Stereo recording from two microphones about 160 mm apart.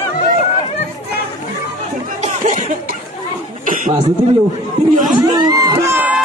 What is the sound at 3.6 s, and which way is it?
Chuckle, 55° right (ahead or behind).